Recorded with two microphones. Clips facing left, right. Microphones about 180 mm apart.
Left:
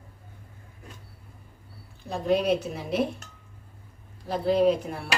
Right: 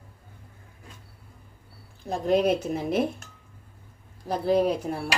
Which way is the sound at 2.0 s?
45° right (ahead or behind).